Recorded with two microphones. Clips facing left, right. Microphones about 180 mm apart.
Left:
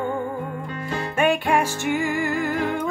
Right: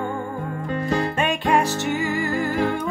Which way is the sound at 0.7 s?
40° right (ahead or behind).